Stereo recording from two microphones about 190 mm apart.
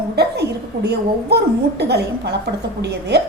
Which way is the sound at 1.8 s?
60° right (ahead or behind).